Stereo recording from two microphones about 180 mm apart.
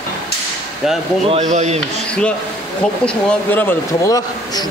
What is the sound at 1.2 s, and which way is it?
Speech, 40° right (ahead or behind).